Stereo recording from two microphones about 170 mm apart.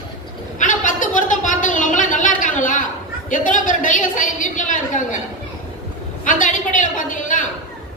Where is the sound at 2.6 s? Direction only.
50° left (ahead or behind).